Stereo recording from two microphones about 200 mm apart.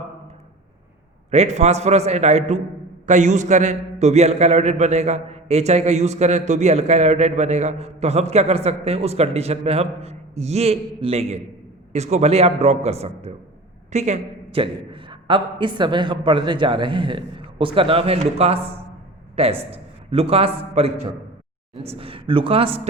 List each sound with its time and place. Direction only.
1.3 s a man's voice: 35° right (ahead or behind)